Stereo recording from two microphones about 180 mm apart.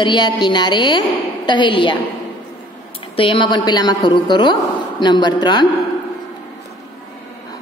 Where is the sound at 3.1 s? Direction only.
30° left (ahead or behind).